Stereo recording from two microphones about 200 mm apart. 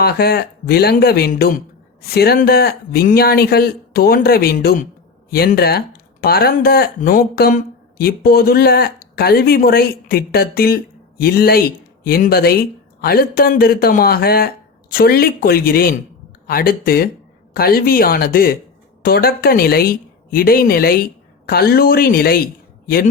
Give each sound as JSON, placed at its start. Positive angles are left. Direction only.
{"t": 0.0, "sound": "speech", "side_deg": 50}